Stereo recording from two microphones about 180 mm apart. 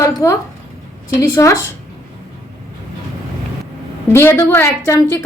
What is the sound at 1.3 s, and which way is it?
Speech, 15° left (ahead or behind).